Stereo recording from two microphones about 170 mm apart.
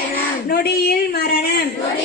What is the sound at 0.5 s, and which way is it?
A woman's voice, 70° left (ahead or behind).